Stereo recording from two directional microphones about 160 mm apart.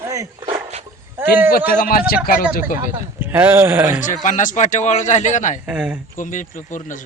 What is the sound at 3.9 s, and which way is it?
A man's voice, 50° left (ahead or behind).